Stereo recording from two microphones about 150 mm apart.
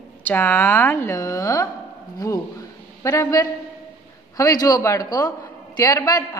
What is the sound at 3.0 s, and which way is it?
A woman's voice, 20° left (ahead or behind).